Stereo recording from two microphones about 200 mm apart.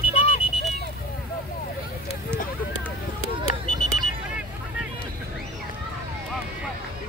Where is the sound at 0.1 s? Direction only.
30° left (ahead or behind).